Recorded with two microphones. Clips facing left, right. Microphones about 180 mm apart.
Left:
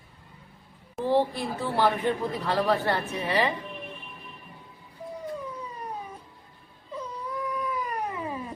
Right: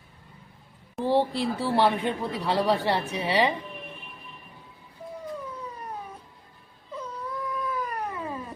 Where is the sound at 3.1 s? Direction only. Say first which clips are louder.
Right 3 dB; 15° right (ahead or behind).